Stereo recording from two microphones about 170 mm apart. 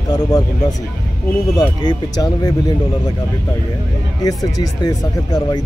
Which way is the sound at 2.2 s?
20° left (ahead or behind).